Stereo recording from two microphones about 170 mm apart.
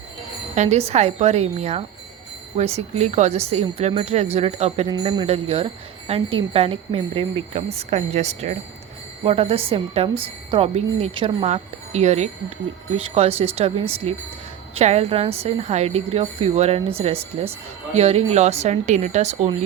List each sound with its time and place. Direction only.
0.5 s a woman's voice: 40° right (ahead or behind)
11.4 s a woman's voice: 40° right (ahead or behind)